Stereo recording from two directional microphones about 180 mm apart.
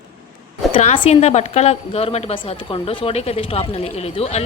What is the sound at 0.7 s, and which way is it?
A woman's voice, 30° left (ahead or behind).